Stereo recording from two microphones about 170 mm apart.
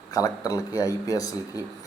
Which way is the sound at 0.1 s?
20° left (ahead or behind).